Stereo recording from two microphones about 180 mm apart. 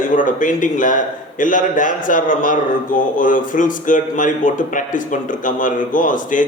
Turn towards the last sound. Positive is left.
turn(degrees=45)  # may be behind; listen again after turning